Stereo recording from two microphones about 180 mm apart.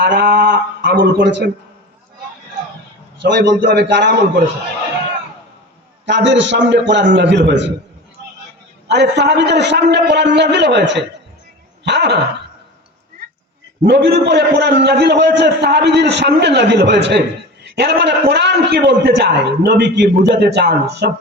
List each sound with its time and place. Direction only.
0.0 s speech: 55° right (ahead or behind); by 1.5 s 75° right (ahead or behind)
3.2 s a man's voice: 75° right (ahead or behind)
6.1 s a man's voice: 80° right
8.9 s a man's voice: 70° right (ahead or behind)
13.8 s a man's voice: 70° right (ahead or behind)